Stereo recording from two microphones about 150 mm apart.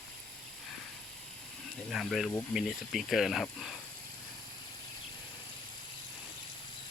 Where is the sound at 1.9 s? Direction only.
Centre (ahead or behind).